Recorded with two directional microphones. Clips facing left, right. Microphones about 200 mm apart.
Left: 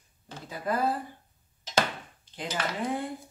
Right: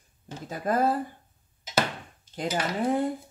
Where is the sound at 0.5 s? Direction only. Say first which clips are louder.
Right 4 dB; 45° right (ahead or behind).